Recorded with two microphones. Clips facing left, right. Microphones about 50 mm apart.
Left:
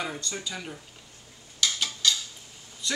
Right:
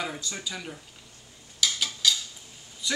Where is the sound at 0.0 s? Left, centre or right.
Centre.